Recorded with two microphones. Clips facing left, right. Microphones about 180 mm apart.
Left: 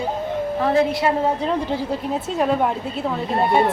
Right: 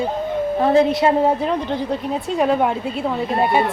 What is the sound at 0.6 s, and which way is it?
Speech, 20° right (ahead or behind).